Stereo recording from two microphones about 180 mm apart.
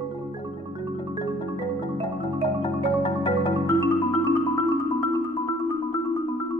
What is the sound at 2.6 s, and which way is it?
Marimba, 25° left (ahead or behind).